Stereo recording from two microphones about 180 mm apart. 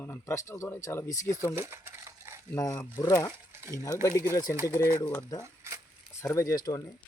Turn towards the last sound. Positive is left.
turn(degrees=20)  # may be behind; listen again after turning